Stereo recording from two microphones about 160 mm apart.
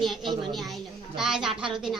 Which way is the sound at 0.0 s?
Centre (ahead or behind).